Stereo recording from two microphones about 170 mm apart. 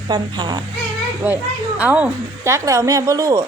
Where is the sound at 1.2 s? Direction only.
10° right (ahead or behind).